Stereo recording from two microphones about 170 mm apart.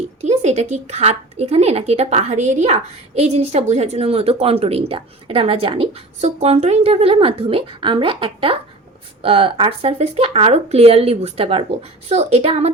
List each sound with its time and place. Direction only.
0.2 s a woman's voice: 40° right (ahead or behind)